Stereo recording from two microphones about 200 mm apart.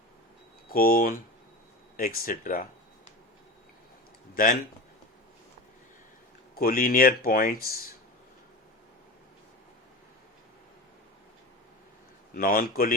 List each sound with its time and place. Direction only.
0.7 s speech: 45° left (ahead or behind)
4.4 s speech: 45° left (ahead or behind)
6.6 s speech: 45° left (ahead or behind)
12.3 s speech: 45° left (ahead or behind)